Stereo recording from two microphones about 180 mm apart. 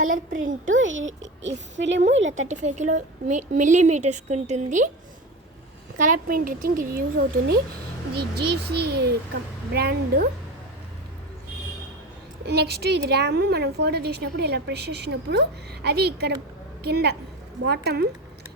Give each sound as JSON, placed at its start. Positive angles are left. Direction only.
{"t": 0.6, "sound": "a woman's voice", "side_deg": -90}
{"t": 2.5, "sound": "a woman's voice", "side_deg": -40}
{"t": 6.0, "sound": "a woman's voice", "side_deg": -50}
{"t": 12.5, "sound": "a woman's voice", "side_deg": -65}